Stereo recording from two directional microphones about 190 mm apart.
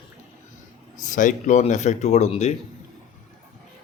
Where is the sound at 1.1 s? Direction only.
40° left (ahead or behind).